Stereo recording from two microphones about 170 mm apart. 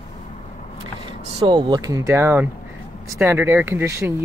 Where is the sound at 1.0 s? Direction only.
25° right (ahead or behind).